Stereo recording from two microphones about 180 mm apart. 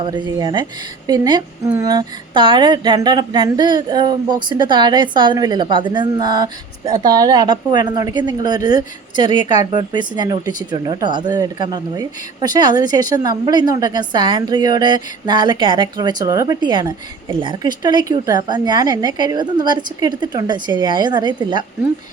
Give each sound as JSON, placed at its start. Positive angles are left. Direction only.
{"t": 0.0, "sound": "speech", "side_deg": -25}